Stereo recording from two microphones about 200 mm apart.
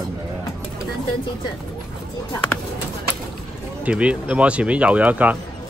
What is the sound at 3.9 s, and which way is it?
Speech, 5° right (ahead or behind).